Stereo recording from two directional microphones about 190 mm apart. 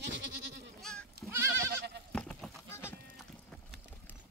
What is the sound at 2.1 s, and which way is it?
Goat, 5° left (ahead or behind).